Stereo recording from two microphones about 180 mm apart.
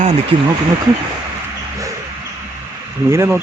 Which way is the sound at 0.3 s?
30° right (ahead or behind).